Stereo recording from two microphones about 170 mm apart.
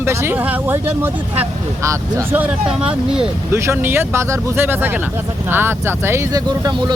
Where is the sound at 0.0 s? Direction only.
15° right (ahead or behind).